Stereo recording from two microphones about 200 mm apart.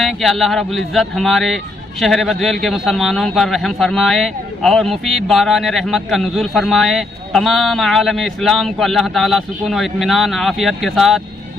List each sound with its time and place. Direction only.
0.0 s speech: centre (ahead or behind)